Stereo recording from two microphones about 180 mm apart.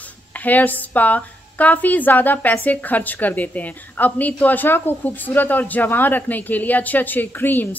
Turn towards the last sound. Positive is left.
turn(degrees=10)  # may be behind; listen again after turning